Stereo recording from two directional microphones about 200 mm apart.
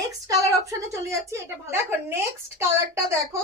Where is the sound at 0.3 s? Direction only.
15° right (ahead or behind).